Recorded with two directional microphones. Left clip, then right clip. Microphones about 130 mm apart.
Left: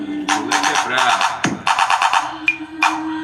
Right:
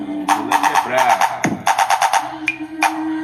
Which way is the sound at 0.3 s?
30° right (ahead or behind).